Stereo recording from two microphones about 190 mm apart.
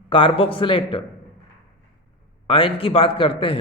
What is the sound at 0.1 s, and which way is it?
Speech, 25° left (ahead or behind).